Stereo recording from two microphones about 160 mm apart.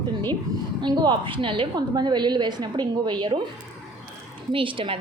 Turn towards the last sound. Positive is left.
turn(degrees=-35)  # may be behind; listen again after turning